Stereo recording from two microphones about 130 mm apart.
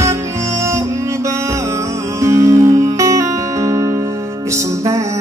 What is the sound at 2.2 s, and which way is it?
Music, 25° right (ahead or behind).